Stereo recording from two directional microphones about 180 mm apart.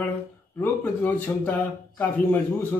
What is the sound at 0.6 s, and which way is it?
Speech, 10° left (ahead or behind).